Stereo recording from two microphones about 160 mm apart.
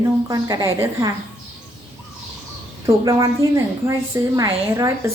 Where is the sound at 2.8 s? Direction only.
20° right (ahead or behind).